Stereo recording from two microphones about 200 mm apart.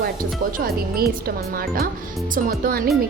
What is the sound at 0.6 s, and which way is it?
Speech, 50° right (ahead or behind).